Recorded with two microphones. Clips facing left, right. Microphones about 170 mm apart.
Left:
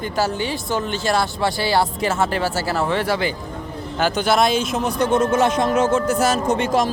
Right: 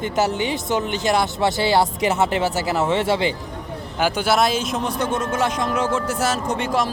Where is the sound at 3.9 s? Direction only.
10° right (ahead or behind).